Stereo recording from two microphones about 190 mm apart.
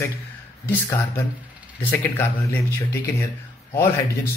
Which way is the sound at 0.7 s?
10° left (ahead or behind).